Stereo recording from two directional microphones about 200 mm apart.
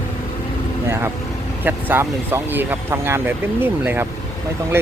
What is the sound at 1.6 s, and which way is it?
Speech, 10° right (ahead or behind).